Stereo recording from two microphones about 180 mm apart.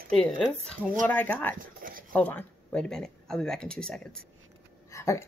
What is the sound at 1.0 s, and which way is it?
A woman's voice, 10° left (ahead or behind).